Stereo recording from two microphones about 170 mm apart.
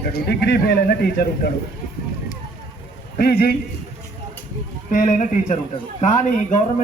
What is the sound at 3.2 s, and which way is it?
Speech, 65° left (ahead or behind).